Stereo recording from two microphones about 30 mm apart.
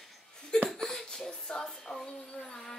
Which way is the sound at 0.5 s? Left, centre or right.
Left.